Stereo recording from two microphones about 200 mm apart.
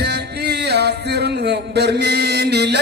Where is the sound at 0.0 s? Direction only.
55° right (ahead or behind).